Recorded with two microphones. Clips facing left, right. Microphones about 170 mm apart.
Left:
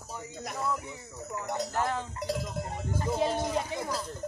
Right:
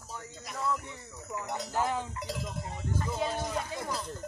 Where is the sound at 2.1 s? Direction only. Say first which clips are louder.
Left 5 dB; 45° left (ahead or behind).